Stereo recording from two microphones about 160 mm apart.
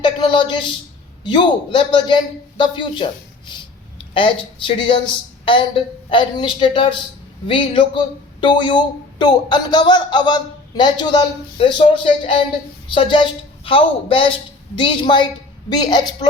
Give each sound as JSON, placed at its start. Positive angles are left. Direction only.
{"t": 0.0, "sound": "a man's voice", "side_deg": 30}